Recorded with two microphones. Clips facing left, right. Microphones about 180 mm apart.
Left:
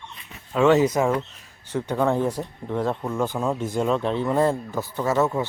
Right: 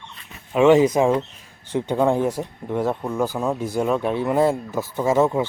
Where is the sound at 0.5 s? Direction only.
15° right (ahead or behind).